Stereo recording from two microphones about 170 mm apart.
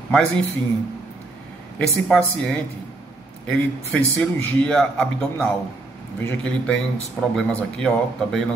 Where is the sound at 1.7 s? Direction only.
5° left (ahead or behind).